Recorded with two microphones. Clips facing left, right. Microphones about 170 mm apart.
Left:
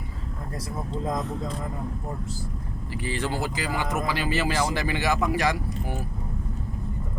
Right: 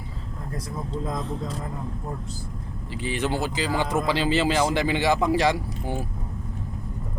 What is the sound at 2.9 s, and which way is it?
Speech, 20° right (ahead or behind).